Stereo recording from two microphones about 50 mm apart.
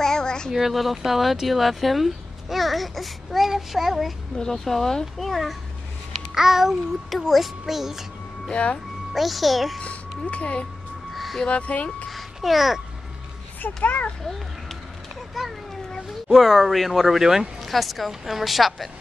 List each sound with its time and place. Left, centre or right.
0.0 s a sound: centre
0.5 s speech: centre
4.4 s speech: centre
8.5 s speech: left
9.1 s speech: centre
9.8 s speech: left
11.1 s music: centre
11.4 s speech: left
12.1 s babbling: centre
15.4 s a child's voice: centre
16.1 s speech: centre